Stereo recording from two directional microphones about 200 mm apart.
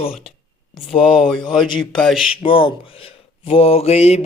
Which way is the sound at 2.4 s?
25° left (ahead or behind).